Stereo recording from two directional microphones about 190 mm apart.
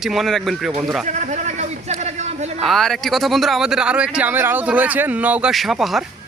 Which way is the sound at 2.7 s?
Centre (ahead or behind).